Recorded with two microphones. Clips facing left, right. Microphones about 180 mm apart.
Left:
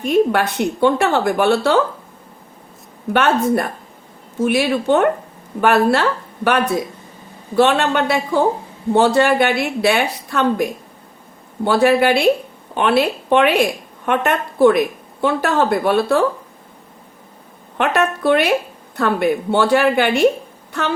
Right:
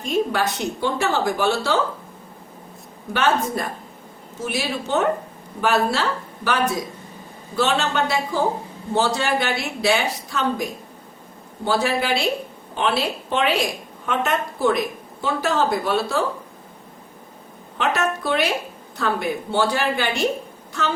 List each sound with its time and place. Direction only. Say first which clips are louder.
0.0 s a woman's voice: left 6 dB; 60° left (ahead or behind)
3.1 s a woman's voice: left 5 dB; 60° left (ahead or behind)
17.7 s a woman's voice: left 5 dB; 60° left (ahead or behind)